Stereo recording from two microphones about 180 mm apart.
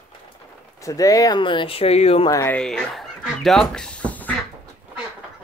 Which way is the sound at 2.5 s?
5° left (ahead or behind).